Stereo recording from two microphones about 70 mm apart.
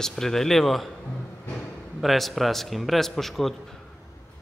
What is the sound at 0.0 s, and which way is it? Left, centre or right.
Speech, centre.